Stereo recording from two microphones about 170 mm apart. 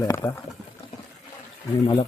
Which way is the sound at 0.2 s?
20° left (ahead or behind).